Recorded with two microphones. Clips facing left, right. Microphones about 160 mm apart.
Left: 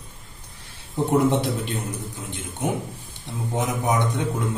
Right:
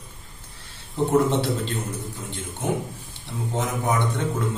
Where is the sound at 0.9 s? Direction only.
15° left (ahead or behind).